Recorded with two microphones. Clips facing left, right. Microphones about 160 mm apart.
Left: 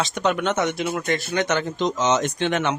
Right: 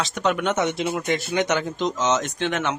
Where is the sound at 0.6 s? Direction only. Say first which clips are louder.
Even; 15° right (ahead or behind).